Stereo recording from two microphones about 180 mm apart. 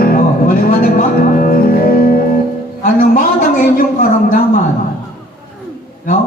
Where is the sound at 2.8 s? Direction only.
50° left (ahead or behind).